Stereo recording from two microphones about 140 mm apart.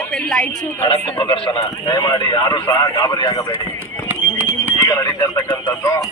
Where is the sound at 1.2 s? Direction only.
40° left (ahead or behind).